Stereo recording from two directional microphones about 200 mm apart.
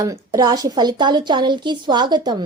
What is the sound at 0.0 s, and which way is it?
A woman's voice, 20° right (ahead or behind).